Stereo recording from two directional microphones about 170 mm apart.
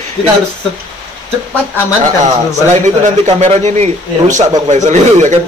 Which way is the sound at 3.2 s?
40° right (ahead or behind).